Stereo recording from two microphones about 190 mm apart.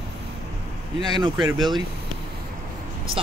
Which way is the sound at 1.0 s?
25° right (ahead or behind).